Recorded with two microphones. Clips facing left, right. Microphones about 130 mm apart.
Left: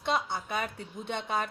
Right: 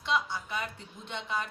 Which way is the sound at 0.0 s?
60° left (ahead or behind).